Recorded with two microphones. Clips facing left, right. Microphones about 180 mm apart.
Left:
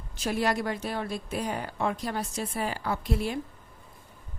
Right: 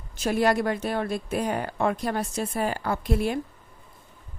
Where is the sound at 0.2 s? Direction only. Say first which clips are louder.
Right 5 dB; 50° right (ahead or behind).